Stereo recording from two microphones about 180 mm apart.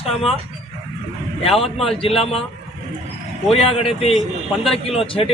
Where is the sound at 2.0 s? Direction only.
35° left (ahead or behind).